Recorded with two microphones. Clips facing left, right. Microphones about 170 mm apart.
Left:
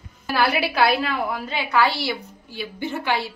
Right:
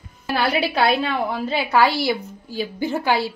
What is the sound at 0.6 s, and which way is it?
A woman's voice, 25° right (ahead or behind).